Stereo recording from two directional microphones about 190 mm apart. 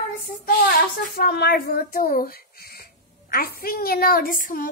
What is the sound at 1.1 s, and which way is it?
A woman's voice, 55° left (ahead or behind).